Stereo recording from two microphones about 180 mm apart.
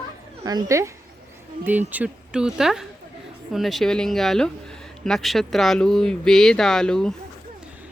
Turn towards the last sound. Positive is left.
turn(degrees=5)  # may be behind; listen again after turning